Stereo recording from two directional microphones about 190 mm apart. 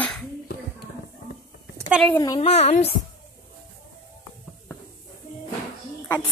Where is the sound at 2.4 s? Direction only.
35° left (ahead or behind).